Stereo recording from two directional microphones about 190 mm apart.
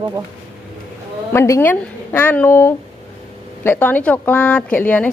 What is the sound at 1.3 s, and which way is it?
A woman's voice, 15° left (ahead or behind).